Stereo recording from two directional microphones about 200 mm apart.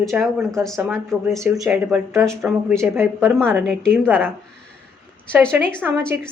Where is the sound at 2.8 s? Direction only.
10° right (ahead or behind).